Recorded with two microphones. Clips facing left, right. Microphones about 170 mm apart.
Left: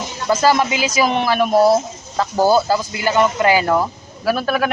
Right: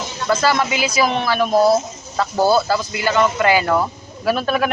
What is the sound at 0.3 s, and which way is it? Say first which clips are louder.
A man's voice: left 2 dB; 15° left (ahead or behind).